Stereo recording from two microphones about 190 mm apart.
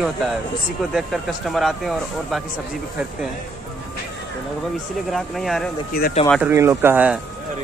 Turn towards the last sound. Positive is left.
turn(degrees=-10)  # may be behind; listen again after turning